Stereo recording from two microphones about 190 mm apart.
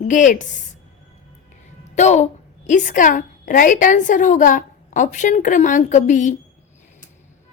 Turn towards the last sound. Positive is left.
turn(degrees=40)  # may be behind; listen again after turning